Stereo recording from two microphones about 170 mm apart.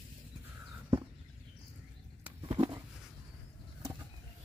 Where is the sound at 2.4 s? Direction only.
30° right (ahead or behind).